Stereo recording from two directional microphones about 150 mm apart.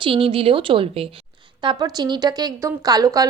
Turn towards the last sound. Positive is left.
turn(degrees=-25)  # may be behind; listen again after turning